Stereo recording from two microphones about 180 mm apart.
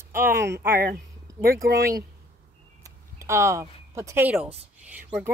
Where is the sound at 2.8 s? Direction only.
15° right (ahead or behind).